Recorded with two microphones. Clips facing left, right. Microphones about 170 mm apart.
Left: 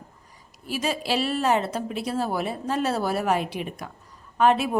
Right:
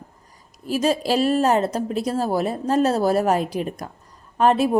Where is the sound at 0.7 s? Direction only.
40° right (ahead or behind).